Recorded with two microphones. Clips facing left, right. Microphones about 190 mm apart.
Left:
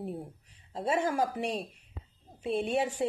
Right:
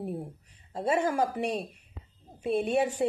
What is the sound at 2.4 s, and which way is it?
Speech, centre (ahead or behind).